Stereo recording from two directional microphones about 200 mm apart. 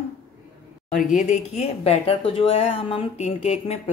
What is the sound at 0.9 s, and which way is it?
Speech, 40° left (ahead or behind).